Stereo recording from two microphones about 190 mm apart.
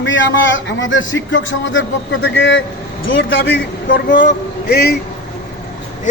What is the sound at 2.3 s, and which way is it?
Speech, 70° left (ahead or behind).